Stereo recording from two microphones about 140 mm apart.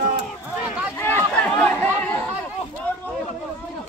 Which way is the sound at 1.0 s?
10° left (ahead or behind).